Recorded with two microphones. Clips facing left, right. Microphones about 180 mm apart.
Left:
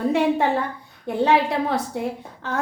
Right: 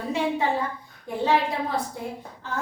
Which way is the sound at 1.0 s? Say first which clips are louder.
Left 4 dB; 70° left (ahead or behind).